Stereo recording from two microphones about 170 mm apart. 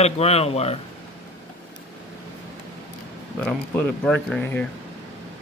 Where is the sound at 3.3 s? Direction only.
10° left (ahead or behind).